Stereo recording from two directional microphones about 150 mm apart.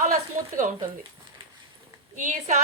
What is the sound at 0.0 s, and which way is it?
Speech, 60° right (ahead or behind).